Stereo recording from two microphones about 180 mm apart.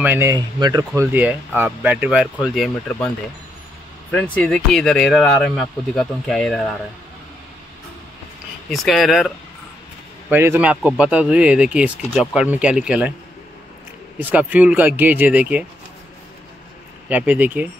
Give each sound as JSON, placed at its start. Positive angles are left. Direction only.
{"t": 0.0, "sound": "speech", "side_deg": -10}
{"t": 1.1, "sound": "speech", "side_deg": -10}
{"t": 4.1, "sound": "speech", "side_deg": 10}
{"t": 8.6, "sound": "speech", "side_deg": 0}
{"t": 10.3, "sound": "speech", "side_deg": -10}
{"t": 14.3, "sound": "speech", "side_deg": -10}
{"t": 17.1, "sound": "speech", "side_deg": -10}